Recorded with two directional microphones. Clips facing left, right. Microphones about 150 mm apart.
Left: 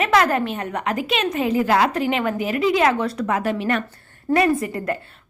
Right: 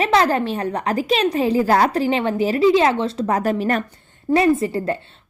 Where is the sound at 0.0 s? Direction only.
30° right (ahead or behind).